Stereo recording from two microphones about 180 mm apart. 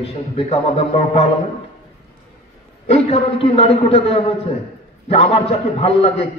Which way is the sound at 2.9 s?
35° left (ahead or behind).